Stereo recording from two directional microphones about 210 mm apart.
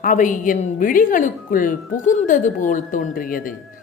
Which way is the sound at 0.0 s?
40° left (ahead or behind).